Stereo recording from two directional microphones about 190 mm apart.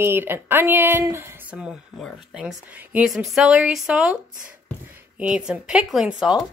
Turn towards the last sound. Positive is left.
turn(degrees=0)  # may be behind; listen again after turning